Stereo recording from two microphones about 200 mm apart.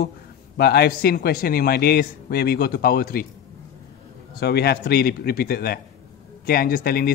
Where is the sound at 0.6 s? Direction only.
50° left (ahead or behind).